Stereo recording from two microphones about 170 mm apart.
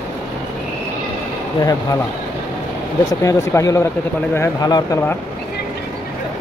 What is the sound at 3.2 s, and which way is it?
Speech, 20° left (ahead or behind).